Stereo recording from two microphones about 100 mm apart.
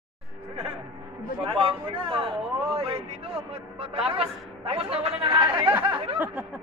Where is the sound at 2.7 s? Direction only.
75° right (ahead or behind); by 5.7 s 60° right (ahead or behind).